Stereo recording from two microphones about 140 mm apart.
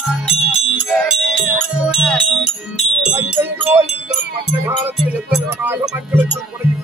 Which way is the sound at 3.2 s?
15° right (ahead or behind).